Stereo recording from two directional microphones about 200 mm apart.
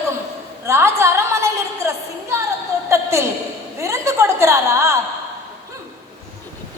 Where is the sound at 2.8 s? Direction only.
15° right (ahead or behind).